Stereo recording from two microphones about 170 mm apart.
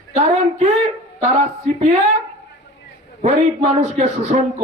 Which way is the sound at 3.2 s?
40° right (ahead or behind).